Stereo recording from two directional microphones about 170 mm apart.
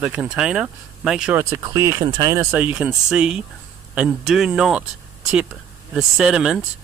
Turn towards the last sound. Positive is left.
turn(degrees=-5)  # may be behind; listen again after turning